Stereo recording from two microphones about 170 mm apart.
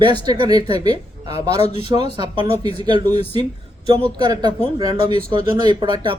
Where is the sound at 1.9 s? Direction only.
30° right (ahead or behind).